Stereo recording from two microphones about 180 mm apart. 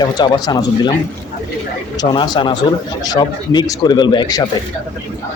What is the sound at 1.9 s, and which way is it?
Speech, 25° left (ahead or behind).